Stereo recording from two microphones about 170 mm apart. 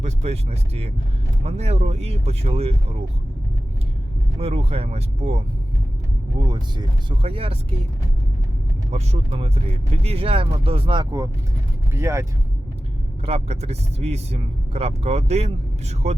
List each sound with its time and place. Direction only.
0.0 s a sound: 40° right (ahead or behind)
1.5 s speech: 40° right (ahead or behind)
4.4 s speech: 35° right (ahead or behind)
6.4 s speech: 25° right (ahead or behind)
8.9 s speech: 35° right (ahead or behind)
11.9 s speech: 15° right (ahead or behind)
13.2 s speech: 40° right (ahead or behind)